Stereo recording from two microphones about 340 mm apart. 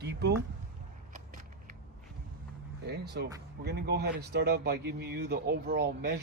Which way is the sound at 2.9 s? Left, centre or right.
Right.